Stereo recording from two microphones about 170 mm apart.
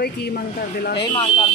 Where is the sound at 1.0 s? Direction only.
25° left (ahead or behind).